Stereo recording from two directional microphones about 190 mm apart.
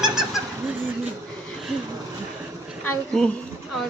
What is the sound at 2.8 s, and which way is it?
Speech, 5° left (ahead or behind).